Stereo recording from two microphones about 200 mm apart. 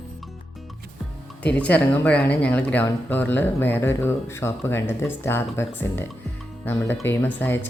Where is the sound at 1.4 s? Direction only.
5° left (ahead or behind).